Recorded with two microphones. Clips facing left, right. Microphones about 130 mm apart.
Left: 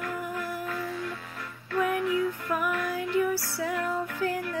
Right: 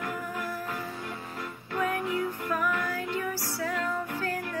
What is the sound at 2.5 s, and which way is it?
Music, 15° left (ahead or behind).